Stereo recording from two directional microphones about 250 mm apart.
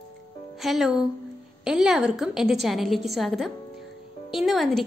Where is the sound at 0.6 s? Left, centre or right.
Centre.